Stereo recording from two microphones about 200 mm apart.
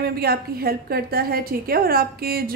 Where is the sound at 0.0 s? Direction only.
50° right (ahead or behind).